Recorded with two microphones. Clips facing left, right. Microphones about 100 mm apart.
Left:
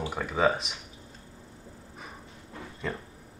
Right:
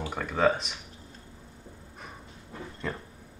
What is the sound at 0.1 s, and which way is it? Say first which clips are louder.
Speech: right 1 dB; 5° left (ahead or behind).